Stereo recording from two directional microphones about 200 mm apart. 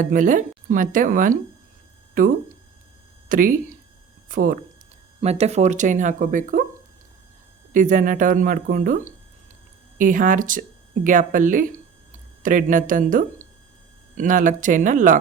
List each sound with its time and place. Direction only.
0.0 s speech: 40° right (ahead or behind)
5.2 s speech: 30° right (ahead or behind)
7.7 s speech: 40° right (ahead or behind)